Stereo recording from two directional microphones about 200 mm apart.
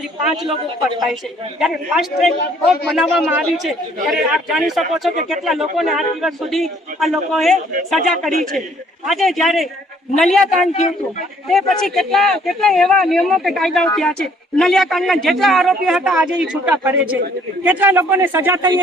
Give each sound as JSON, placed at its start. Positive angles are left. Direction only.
{"t": 1.5, "sound": "speech", "side_deg": 0}
{"t": 10.7, "sound": "a man's voice", "side_deg": 35}
{"t": 11.4, "sound": "speech", "side_deg": 0}